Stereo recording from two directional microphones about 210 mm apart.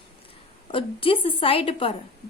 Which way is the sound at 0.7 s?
25° left (ahead or behind).